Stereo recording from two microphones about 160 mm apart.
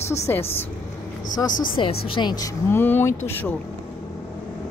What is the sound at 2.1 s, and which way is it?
A woman's voice, 25° left (ahead or behind).